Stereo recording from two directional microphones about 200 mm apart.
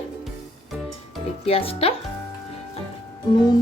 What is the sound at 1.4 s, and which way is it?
Speech, 30° left (ahead or behind).